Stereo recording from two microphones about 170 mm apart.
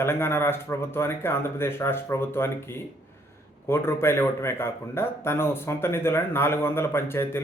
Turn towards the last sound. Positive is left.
turn(degrees=15)  # may be behind; listen again after turning